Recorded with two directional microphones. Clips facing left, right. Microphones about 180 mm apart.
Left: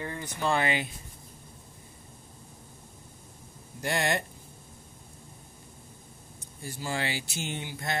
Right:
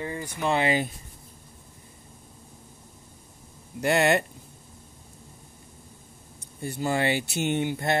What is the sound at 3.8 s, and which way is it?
Speech, 65° right (ahead or behind).